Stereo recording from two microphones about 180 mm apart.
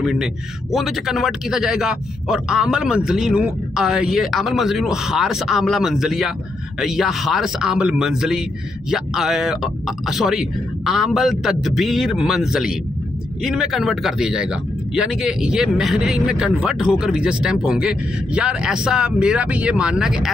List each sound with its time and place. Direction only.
0.0 s a man's voice: centre (ahead or behind)